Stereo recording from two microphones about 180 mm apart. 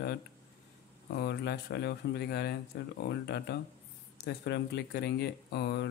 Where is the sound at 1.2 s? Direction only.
65° left (ahead or behind).